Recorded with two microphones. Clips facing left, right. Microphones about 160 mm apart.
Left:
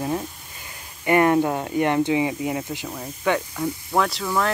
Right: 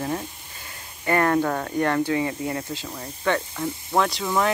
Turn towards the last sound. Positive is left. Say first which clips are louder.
# even
turn(degrees=0)  # may be behind; listen again after turning